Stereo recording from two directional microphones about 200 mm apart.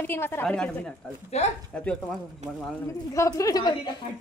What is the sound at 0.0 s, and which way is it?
Speech, 10° left (ahead or behind).